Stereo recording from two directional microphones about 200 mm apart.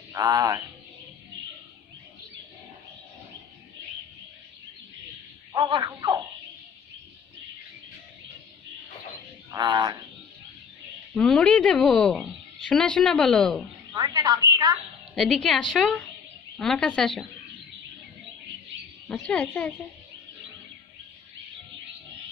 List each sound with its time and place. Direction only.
0.1 s speech: 15° right (ahead or behind)
5.5 s a woman's voice: 20° right (ahead or behind)
9.5 s a woman's voice: 20° right (ahead or behind)
11.1 s a woman's voice: 5° left (ahead or behind)
13.9 s a woman's voice: 20° right (ahead or behind)
15.1 s a woman's voice: centre (ahead or behind)
19.0 s a woman's voice: 5° left (ahead or behind)